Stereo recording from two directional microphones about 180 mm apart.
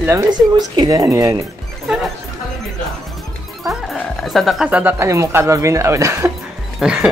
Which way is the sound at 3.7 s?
Centre (ahead or behind).